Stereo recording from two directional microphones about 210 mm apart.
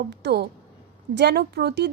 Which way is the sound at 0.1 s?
50° right (ahead or behind).